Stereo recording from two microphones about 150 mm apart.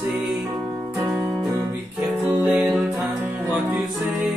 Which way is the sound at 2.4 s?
10° right (ahead or behind).